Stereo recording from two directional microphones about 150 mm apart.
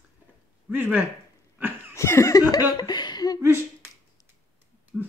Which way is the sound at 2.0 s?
20° left (ahead or behind).